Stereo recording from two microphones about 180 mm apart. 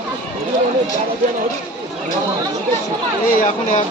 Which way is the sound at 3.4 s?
45° left (ahead or behind).